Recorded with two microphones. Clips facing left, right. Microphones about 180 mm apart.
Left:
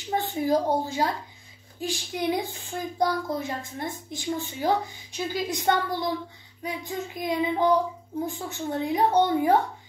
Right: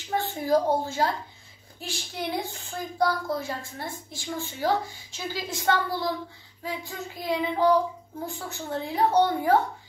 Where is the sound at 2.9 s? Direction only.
20° left (ahead or behind).